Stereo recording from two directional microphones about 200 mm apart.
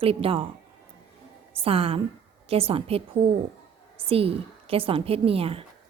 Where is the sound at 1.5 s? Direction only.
30° right (ahead or behind).